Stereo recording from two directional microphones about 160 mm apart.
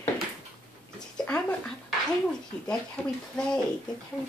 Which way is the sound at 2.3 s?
5° left (ahead or behind).